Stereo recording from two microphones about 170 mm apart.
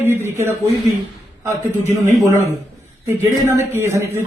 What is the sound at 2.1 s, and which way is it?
Speech, 20° right (ahead or behind).